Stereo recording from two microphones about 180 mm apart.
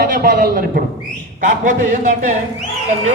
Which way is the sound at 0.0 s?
55° right (ahead or behind).